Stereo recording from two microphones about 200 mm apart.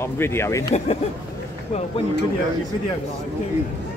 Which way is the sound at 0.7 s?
30° left (ahead or behind).